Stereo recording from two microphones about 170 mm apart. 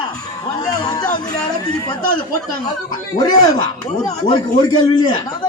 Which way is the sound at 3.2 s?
25° left (ahead or behind).